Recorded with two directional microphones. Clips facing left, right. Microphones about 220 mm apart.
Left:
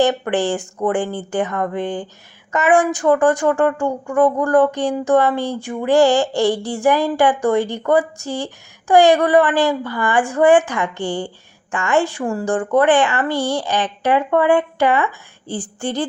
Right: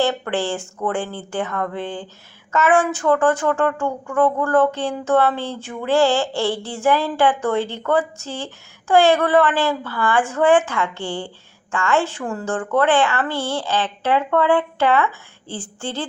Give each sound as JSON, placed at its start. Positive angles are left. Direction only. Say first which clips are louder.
{"t": 0.0, "sound": "speech", "louder": "left 4 dB", "side_deg": 15}